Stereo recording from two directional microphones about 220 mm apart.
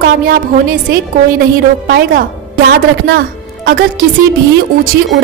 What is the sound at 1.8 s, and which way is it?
A woman's voice, 40° right (ahead or behind).